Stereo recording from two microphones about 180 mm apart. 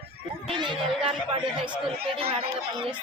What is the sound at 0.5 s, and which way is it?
Speech, 25° right (ahead or behind).